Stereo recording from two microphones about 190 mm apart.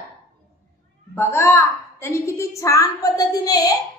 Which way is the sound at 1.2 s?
10° left (ahead or behind).